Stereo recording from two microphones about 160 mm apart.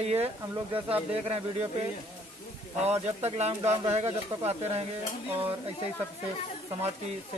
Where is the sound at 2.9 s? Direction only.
45° right (ahead or behind).